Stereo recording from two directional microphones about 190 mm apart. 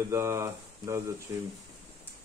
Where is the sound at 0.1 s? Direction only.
15° right (ahead or behind).